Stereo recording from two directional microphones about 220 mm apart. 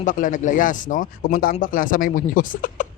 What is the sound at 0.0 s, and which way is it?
Speech, 35° left (ahead or behind).